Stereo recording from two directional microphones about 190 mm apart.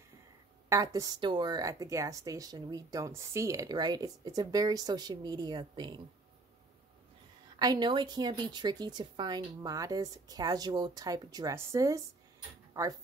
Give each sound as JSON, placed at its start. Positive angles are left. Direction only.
{"t": 0.7, "sound": "speech", "side_deg": -15}
{"t": 7.5, "sound": "speech", "side_deg": -20}